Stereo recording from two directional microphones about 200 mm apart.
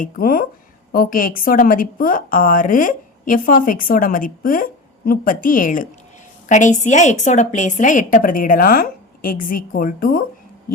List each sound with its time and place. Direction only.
0.0 s a woman's voice: 45° left (ahead or behind)